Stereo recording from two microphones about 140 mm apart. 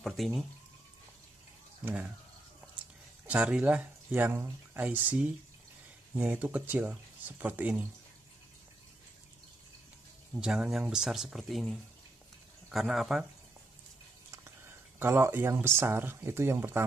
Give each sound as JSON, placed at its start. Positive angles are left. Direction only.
{"t": 0.0, "sound": "speech", "side_deg": 0}
{"t": 3.3, "sound": "speech", "side_deg": -10}
{"t": 10.4, "sound": "speech", "side_deg": -5}
{"t": 15.0, "sound": "speech", "side_deg": -15}